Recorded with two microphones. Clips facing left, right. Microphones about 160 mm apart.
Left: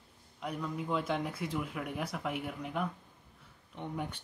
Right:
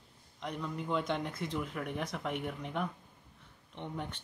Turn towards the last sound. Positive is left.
turn(degrees=10)  # may be behind; listen again after turning